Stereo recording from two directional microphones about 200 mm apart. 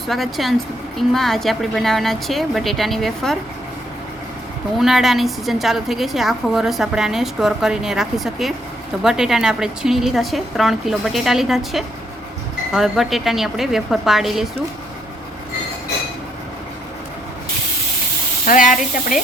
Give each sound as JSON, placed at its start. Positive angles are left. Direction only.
{"t": 0.1, "sound": "a woman's voice", "side_deg": 0}
{"t": 4.8, "sound": "a woman's voice", "side_deg": 0}
{"t": 18.4, "sound": "speech", "side_deg": 40}